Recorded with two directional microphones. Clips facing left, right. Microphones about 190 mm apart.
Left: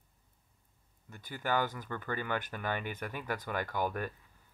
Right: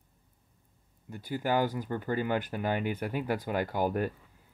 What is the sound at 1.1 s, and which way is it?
Speech, 10° right (ahead or behind).